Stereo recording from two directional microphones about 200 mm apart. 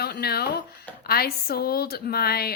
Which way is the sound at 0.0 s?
55° left (ahead or behind).